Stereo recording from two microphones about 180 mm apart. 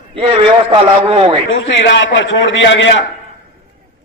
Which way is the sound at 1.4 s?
90° left.